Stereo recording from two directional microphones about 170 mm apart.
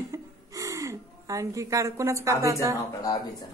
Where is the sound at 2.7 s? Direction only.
20° left (ahead or behind).